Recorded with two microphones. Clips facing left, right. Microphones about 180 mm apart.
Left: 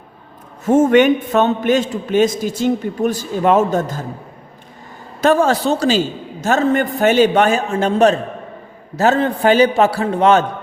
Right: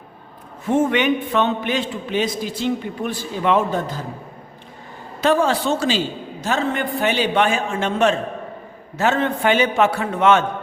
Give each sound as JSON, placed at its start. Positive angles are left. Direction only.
{"t": 0.6, "sound": "a man's voice", "side_deg": 45}
{"t": 5.2, "sound": "a man's voice", "side_deg": 45}